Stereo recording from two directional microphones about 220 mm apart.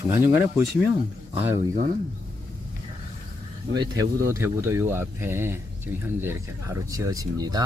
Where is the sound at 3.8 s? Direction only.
15° right (ahead or behind).